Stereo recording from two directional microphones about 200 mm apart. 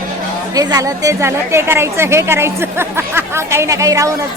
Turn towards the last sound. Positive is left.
turn(degrees=-15)  # may be behind; listen again after turning